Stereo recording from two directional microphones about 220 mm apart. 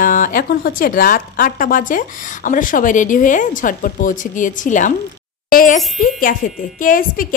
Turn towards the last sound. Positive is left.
turn(degrees=40)  # may be behind; listen again after turning